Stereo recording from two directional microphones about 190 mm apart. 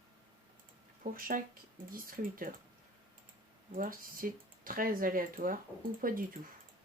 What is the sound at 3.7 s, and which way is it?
Speech, 50° right (ahead or behind).